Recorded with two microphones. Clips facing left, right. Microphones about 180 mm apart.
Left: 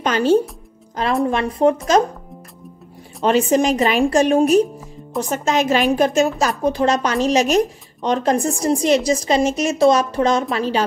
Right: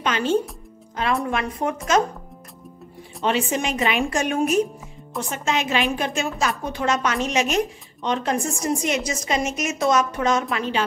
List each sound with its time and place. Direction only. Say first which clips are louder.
0.0 s a woman's voice: left 6 dB; 40° left (ahead or behind)
3.3 s a woman's voice: left 7 dB; 40° left (ahead or behind)